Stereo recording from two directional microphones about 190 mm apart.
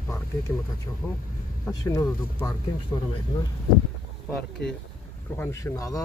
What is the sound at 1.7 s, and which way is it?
Speech, 15° left (ahead or behind).